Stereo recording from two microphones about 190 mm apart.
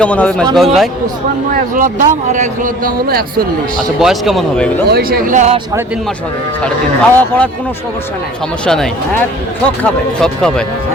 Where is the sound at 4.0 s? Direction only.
Centre (ahead or behind).